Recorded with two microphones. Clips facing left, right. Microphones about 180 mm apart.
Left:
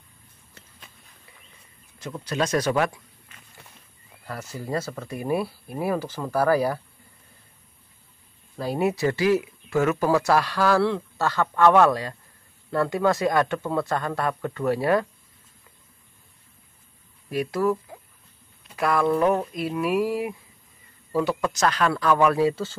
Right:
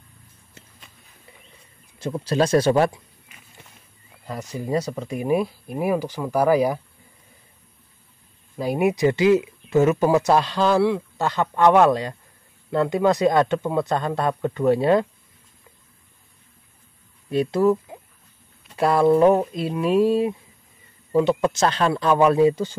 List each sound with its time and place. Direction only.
2.0 s speech: 30° right (ahead or behind)
4.3 s speech: 15° right (ahead or behind)
8.5 s speech: 15° right (ahead or behind)
17.3 s speech: 25° right (ahead or behind)